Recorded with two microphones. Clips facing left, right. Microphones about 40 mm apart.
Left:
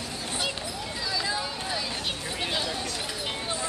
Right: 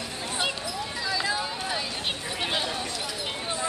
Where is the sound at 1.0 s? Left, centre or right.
Right.